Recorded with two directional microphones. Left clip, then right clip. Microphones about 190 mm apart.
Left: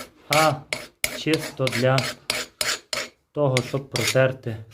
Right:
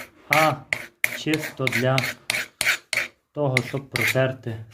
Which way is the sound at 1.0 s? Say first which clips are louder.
Left 1 dB; 25° left (ahead or behind).